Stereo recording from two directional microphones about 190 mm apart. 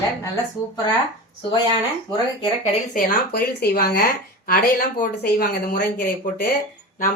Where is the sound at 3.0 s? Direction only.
55° left (ahead or behind).